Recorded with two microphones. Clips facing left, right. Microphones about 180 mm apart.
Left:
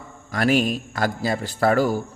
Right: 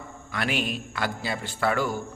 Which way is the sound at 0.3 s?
40° left (ahead or behind).